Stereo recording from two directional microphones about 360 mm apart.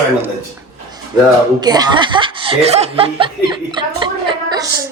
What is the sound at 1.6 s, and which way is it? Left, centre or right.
A woman's voice, centre.